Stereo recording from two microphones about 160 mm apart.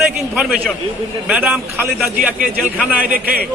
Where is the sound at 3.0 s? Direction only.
60° right (ahead or behind).